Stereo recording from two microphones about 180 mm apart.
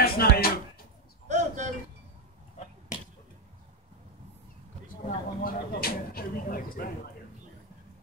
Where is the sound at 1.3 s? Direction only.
40° right (ahead or behind).